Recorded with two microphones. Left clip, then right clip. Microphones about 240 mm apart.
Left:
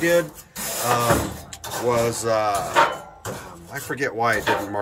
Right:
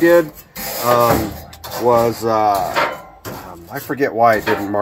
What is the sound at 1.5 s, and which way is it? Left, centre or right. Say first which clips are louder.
Speech: right 8 dB; right.